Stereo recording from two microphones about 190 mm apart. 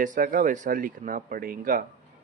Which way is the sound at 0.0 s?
45° right (ahead or behind).